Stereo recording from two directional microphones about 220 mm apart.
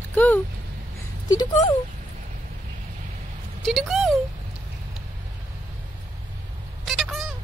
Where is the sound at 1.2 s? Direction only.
20° left (ahead or behind).